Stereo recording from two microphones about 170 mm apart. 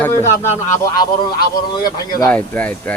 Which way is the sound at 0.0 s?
15° left (ahead or behind).